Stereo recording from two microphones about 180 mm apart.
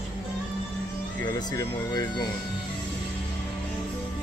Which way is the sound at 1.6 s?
20° left (ahead or behind).